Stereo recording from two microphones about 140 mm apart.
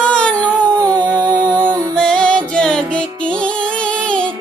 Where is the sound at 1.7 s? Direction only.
5° left (ahead or behind).